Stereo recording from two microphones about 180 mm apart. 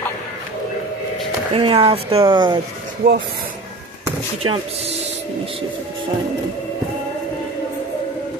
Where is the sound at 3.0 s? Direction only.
70° right (ahead or behind).